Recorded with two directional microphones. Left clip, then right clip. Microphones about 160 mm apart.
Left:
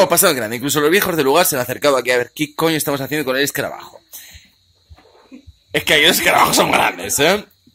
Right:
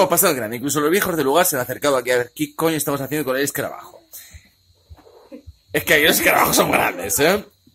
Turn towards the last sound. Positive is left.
turn(degrees=10)  # may be behind; listen again after turning